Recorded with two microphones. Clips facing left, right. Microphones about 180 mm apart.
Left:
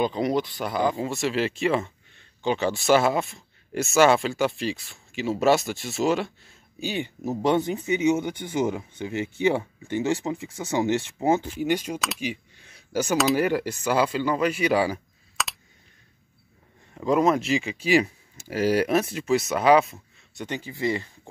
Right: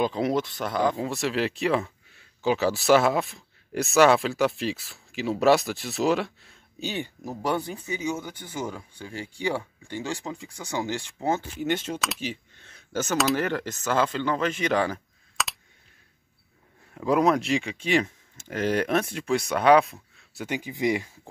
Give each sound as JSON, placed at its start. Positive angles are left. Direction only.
{"t": 0.0, "sound": "speech", "side_deg": 0}
{"t": 6.8, "sound": "speech", "side_deg": 15}
{"t": 12.2, "sound": "a sound", "side_deg": 10}
{"t": 13.2, "sound": "speech", "side_deg": 5}
{"t": 16.9, "sound": "speech", "side_deg": 0}